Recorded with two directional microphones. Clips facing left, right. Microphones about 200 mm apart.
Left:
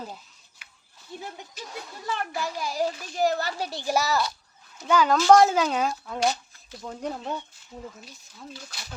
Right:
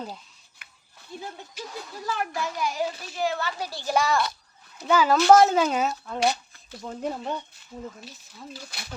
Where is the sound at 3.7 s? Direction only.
20° left (ahead or behind).